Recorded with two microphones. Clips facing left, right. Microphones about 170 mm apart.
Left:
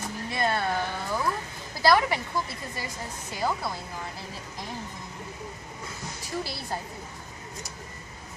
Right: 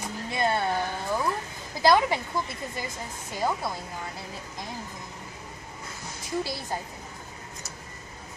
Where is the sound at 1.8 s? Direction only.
20° right (ahead or behind).